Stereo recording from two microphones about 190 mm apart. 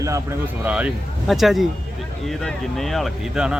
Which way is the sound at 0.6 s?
5° right (ahead or behind).